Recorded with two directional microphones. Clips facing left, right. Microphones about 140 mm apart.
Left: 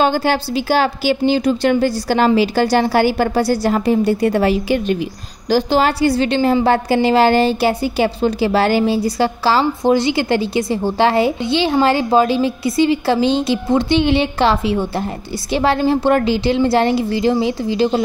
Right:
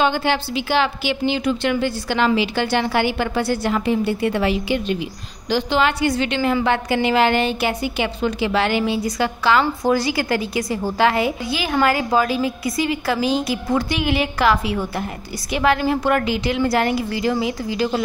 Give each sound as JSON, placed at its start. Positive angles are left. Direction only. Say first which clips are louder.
{"t": 0.0, "sound": "a woman's voice", "louder": "left 3 dB", "side_deg": 40}